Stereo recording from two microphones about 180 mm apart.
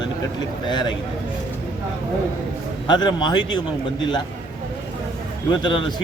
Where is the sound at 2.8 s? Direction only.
25° left (ahead or behind).